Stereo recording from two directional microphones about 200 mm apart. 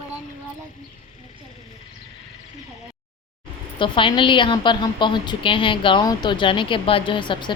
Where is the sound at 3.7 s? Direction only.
25° left (ahead or behind).